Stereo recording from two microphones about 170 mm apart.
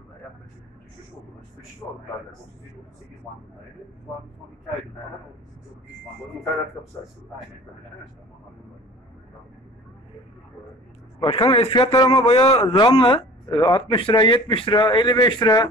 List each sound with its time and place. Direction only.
11.1 s a man's voice: 30° left (ahead or behind)